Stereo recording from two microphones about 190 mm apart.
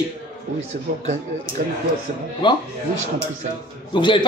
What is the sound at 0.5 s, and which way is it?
Speech, 35° right (ahead or behind).